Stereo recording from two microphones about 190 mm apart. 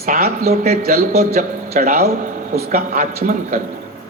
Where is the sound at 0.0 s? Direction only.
50° right (ahead or behind).